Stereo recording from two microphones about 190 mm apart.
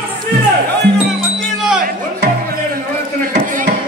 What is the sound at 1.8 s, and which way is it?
Music, 50° right (ahead or behind).